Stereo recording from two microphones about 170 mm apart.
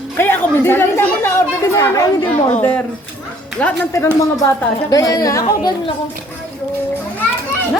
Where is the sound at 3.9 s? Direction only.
20° left (ahead or behind).